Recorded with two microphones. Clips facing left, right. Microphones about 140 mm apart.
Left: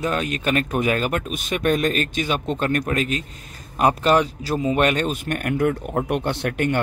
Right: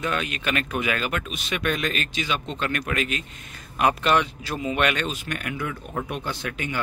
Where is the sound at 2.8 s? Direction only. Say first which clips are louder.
Left 4 dB; 35° left (ahead or behind).